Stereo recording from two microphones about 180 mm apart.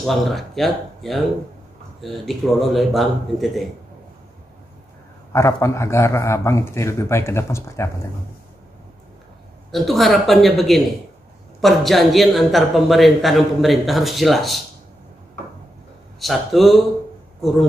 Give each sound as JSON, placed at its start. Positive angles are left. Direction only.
{"t": 0.0, "sound": "a man's voice", "side_deg": 0}
{"t": 5.3, "sound": "a man's voice", "side_deg": 15}
{"t": 9.7, "sound": "a man's voice", "side_deg": 0}
{"t": 16.2, "sound": "a man's voice", "side_deg": 0}